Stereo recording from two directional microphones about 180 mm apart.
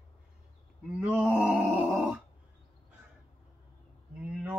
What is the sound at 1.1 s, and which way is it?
Groan, 10° right (ahead or behind).